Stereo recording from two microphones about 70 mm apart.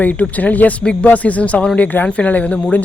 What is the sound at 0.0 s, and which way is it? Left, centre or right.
A man's voice, left.